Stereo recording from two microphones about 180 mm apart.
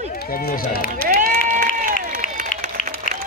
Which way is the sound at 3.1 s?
45° left (ahead or behind).